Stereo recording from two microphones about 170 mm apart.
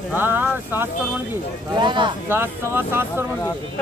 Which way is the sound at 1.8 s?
30° right (ahead or behind).